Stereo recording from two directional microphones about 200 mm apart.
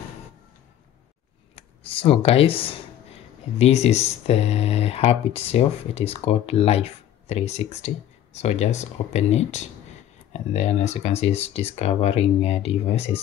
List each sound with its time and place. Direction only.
1.5 s speech: 30° left (ahead or behind)